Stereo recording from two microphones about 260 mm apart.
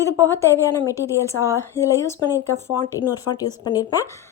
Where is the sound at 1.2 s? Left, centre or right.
Centre.